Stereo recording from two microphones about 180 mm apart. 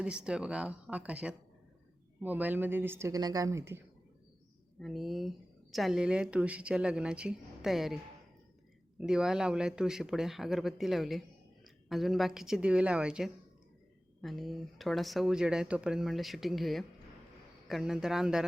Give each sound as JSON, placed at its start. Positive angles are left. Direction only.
{"t": 0.0, "sound": "speech", "side_deg": -5}
{"t": 4.8, "sound": "speech", "side_deg": 0}
{"t": 9.0, "sound": "speech", "side_deg": -5}